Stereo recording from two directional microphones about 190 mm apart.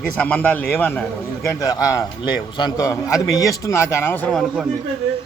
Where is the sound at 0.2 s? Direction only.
10° left (ahead or behind).